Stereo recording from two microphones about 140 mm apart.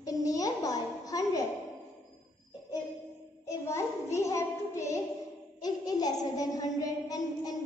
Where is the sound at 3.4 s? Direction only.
20° left (ahead or behind).